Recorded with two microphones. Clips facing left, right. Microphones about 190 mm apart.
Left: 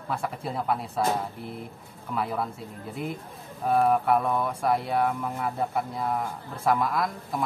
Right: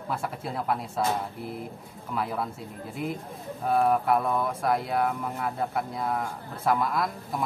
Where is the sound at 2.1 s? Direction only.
Centre (ahead or behind).